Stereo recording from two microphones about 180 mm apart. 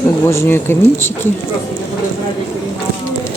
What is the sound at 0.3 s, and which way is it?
Speech, 15° left (ahead or behind).